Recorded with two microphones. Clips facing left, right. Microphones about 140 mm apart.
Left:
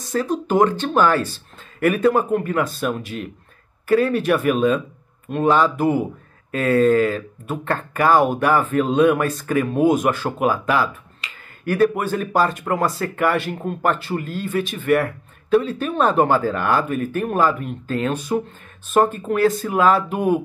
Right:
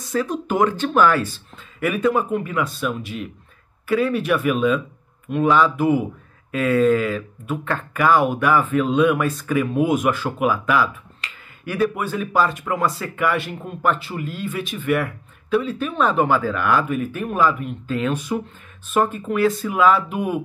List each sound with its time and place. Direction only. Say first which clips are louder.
0.1 s speech: left 2 dB; 35° left (ahead or behind)
11.6 s speech: left 4 dB; 45° left (ahead or behind)